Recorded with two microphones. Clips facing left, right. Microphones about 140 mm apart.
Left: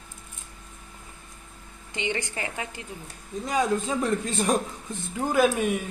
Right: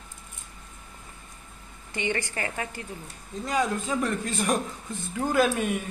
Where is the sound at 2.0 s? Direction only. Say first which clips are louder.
Right 1 dB; 20° left (ahead or behind).